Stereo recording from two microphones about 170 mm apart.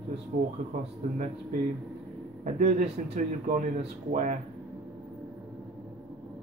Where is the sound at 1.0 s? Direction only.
40° right (ahead or behind).